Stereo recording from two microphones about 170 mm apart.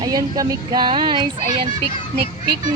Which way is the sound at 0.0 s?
20° right (ahead or behind).